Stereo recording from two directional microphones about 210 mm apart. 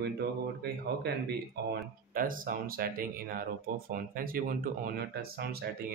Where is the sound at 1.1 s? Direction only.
50° right (ahead or behind).